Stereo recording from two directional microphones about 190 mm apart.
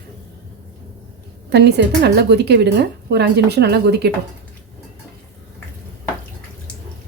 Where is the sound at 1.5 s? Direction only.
60° right (ahead or behind).